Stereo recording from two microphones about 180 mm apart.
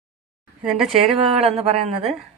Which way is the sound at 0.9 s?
30° right (ahead or behind).